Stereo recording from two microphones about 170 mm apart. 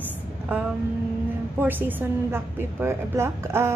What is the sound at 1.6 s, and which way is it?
A woman's voice, 10° right (ahead or behind).